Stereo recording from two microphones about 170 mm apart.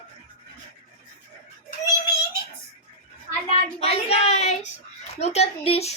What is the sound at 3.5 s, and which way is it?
Speech, 35° left (ahead or behind).